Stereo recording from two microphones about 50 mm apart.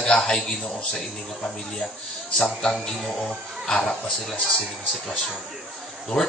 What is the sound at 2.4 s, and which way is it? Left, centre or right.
Speech, centre.